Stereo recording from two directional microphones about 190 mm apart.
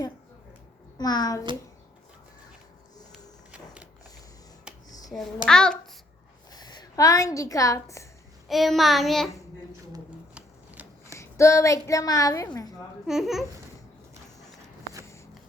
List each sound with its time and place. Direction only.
0.9 s a child's voice: 20° left (ahead or behind)
3.1 s a sound: 5° right (ahead or behind)
4.9 s a sound: 20° left (ahead or behind)
5.5 s a child's voice: 5° left (ahead or behind)
6.5 s a woman's voice: 20° left (ahead or behind)
8.4 s a child's voice: centre (ahead or behind)
10.3 s shuffling cards: 10° right (ahead or behind)
11.2 s a woman's voice: 15° left (ahead or behind)
13.1 s a child's voice: centre (ahead or behind)